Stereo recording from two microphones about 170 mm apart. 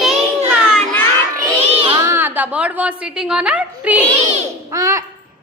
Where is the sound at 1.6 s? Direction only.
30° right (ahead or behind).